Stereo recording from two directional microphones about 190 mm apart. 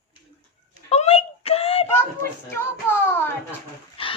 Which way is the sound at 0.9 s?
30° left (ahead or behind).